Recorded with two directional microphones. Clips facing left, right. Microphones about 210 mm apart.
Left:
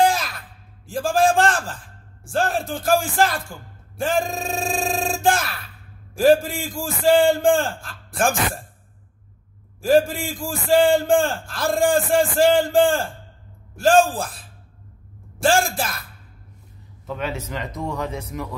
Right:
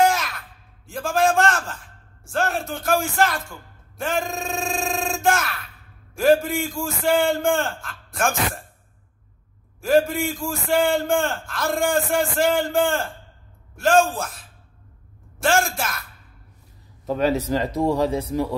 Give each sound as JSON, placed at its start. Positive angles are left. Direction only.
{"t": 0.0, "sound": "a sound", "side_deg": 30}
{"t": 0.8, "sound": "a man's voice", "side_deg": 30}
{"t": 9.8, "sound": "a man's voice", "side_deg": 30}
{"t": 15.4, "sound": "a man's voice", "side_deg": 30}
{"t": 17.0, "sound": "speech", "side_deg": -40}